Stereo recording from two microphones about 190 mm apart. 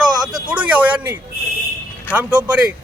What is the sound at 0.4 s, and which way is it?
A man's voice, 5° right (ahead or behind).